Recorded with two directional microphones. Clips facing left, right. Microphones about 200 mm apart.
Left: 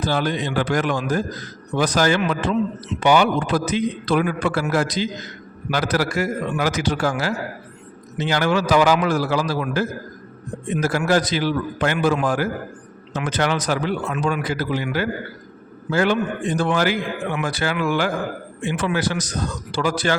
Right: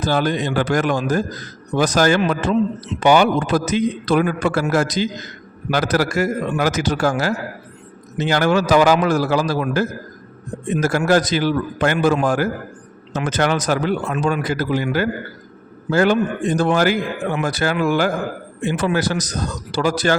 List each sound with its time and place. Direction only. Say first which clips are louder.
0.0 s a man's voice: right 3 dB; 45° right (ahead or behind)
15.9 s a man's voice: right 3 dB; 45° right (ahead or behind)